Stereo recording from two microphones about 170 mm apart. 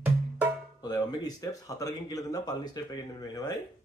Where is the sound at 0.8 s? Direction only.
20° left (ahead or behind).